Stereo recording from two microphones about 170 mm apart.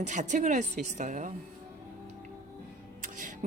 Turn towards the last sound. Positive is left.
turn(degrees=-50)  # may be behind; listen again after turning